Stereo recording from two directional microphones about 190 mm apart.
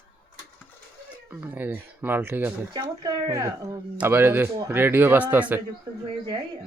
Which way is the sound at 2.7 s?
20° right (ahead or behind).